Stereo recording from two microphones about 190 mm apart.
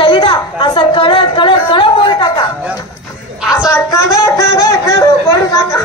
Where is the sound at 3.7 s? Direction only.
15° left (ahead or behind).